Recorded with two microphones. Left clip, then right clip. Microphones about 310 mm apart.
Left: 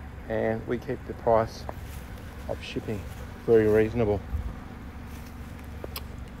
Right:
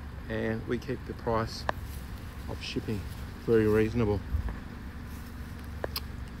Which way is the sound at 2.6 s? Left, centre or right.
Centre.